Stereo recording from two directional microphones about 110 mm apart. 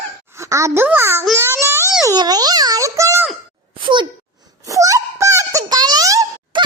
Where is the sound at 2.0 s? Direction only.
40° right (ahead or behind).